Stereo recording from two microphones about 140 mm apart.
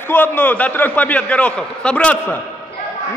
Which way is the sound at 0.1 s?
15° left (ahead or behind).